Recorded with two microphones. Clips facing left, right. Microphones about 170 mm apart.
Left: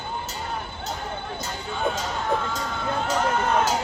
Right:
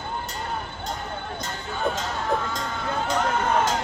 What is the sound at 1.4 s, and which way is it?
Music, 5° left (ahead or behind).